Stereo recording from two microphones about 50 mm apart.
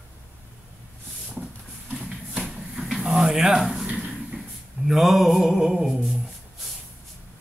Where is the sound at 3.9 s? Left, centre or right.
Centre.